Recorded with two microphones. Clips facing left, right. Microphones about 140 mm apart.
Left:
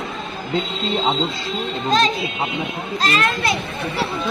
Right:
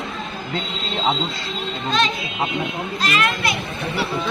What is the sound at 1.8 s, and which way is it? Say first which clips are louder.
A child's voice: left 4 dB; 40° left (ahead or behind).